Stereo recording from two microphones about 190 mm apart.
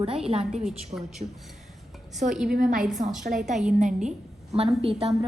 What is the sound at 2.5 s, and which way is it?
Speech, 50° right (ahead or behind).